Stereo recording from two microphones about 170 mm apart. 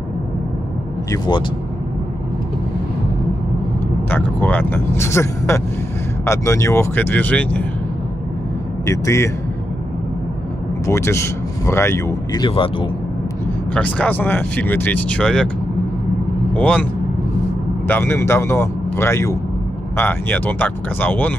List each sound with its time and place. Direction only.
1.1 s speech: 25° left (ahead or behind)
4.1 s speech: 10° left (ahead or behind)
8.8 s speech: 15° left (ahead or behind)
10.9 s speech: 15° left (ahead or behind); by 12.9 s 30° left (ahead or behind)
13.7 s speech: 10° left (ahead or behind)
16.5 s speech: 10° left (ahead or behind)
17.8 s speech: 10° left (ahead or behind)